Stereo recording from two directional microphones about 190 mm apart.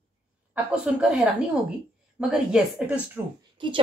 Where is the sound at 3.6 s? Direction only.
25° right (ahead or behind).